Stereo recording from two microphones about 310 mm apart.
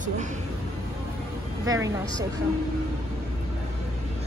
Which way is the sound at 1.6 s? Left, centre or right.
Centre.